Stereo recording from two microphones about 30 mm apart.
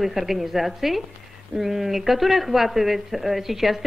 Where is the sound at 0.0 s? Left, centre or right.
Centre.